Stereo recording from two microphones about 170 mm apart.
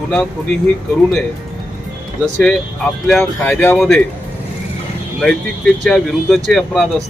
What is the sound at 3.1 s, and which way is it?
Speech, 5° left (ahead or behind).